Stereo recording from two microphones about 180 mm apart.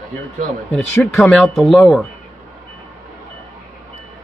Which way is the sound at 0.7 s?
Centre (ahead or behind).